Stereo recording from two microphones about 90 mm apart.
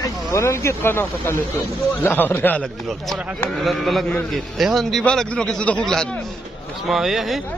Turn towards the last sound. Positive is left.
turn(degrees=-5)  # may be behind; listen again after turning